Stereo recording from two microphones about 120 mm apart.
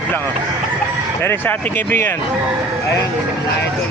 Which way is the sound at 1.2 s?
15° left (ahead or behind).